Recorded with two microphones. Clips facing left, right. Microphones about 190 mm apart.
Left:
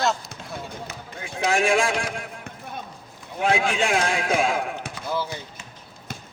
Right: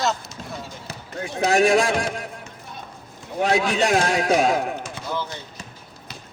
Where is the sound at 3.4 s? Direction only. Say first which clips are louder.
Right 2 dB; 40° right (ahead or behind).